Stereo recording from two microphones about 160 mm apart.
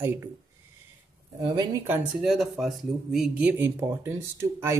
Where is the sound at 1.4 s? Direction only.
25° right (ahead or behind).